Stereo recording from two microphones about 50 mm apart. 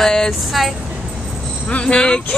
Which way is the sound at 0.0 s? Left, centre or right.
Centre.